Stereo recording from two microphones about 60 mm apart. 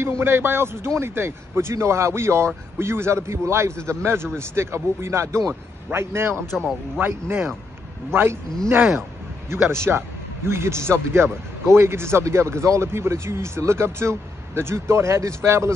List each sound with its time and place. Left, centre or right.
0.0 s a man's voice: right
6.5 s speech: centre
7.0 s a man's voice: right
9.7 s speech: right